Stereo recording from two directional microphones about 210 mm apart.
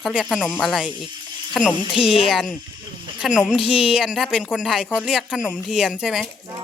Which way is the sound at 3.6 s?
25° left (ahead or behind).